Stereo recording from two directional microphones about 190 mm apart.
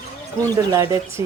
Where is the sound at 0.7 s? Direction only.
15° right (ahead or behind).